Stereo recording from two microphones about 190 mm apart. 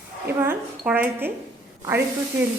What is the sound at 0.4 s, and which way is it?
Speech, 10° right (ahead or behind).